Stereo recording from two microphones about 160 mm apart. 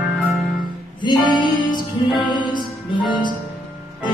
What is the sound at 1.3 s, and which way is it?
Music, 30° right (ahead or behind).